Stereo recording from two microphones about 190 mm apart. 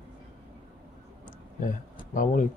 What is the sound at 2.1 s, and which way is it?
Speech, 45° left (ahead or behind).